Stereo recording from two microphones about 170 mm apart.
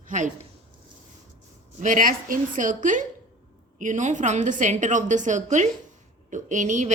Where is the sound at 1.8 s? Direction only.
50° right (ahead or behind).